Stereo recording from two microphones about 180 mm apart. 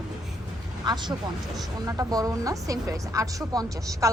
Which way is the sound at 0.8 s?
25° right (ahead or behind).